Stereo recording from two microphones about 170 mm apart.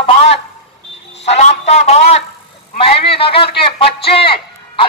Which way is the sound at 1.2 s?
40° left (ahead or behind).